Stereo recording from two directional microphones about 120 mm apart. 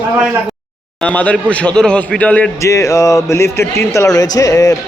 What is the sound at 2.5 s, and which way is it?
A man's voice, 25° left (ahead or behind).